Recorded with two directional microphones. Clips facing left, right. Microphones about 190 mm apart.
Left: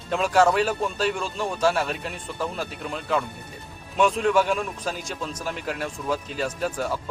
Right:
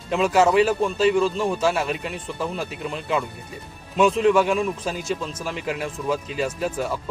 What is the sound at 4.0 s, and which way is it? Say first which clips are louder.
Speech: right 3 dB; centre (ahead or behind).